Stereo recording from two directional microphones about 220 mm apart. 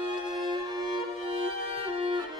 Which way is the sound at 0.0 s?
20° right (ahead or behind).